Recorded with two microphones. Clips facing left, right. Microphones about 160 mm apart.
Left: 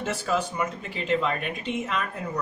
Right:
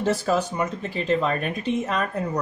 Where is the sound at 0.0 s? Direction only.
35° right (ahead or behind).